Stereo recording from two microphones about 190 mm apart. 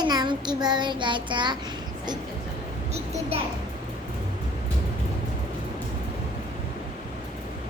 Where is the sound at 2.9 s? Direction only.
35° right (ahead or behind).